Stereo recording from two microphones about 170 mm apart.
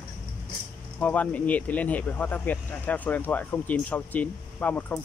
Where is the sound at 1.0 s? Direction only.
10° left (ahead or behind).